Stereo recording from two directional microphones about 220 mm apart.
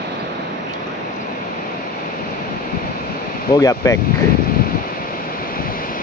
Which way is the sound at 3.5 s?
15° left (ahead or behind).